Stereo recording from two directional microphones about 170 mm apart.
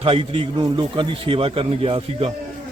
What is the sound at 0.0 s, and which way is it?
Speech, 30° right (ahead or behind).